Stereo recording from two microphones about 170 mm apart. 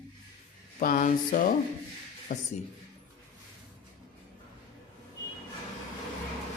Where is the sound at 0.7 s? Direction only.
50° left (ahead or behind).